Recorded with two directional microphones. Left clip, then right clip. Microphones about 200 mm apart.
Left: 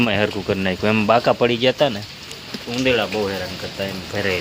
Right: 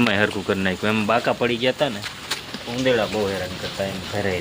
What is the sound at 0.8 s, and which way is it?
Speech, 20° left (ahead or behind).